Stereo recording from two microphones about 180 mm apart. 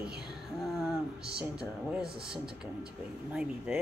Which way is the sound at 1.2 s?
5° right (ahead or behind).